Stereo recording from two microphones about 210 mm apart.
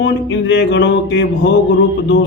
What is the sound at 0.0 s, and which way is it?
A man's voice, 55° left (ahead or behind).